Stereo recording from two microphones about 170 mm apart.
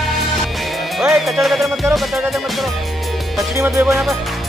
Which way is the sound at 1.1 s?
Centre (ahead or behind).